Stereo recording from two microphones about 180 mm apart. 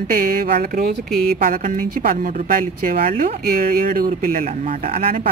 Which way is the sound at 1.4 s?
50° right (ahead or behind).